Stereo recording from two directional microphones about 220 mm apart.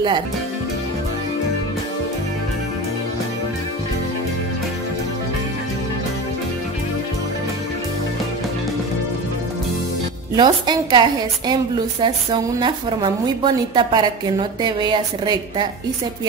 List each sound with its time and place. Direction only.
10.3 s a woman's voice: 20° right (ahead or behind)